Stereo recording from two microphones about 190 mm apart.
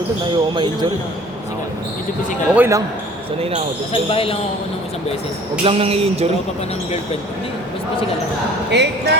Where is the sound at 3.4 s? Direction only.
30° right (ahead or behind).